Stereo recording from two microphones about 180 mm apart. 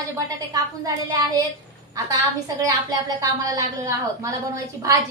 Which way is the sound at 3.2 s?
20° right (ahead or behind).